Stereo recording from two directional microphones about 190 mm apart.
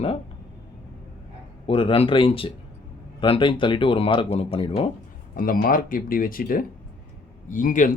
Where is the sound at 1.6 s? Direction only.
30° left (ahead or behind).